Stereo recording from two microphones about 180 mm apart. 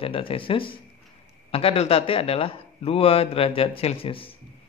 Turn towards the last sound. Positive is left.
turn(degrees=30)  # may be behind; listen again after turning